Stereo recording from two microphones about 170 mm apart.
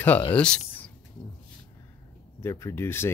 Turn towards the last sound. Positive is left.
turn(degrees=15)  # may be behind; listen again after turning